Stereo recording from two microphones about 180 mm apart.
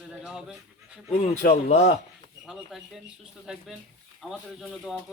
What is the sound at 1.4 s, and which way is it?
Speech, 50° left (ahead or behind).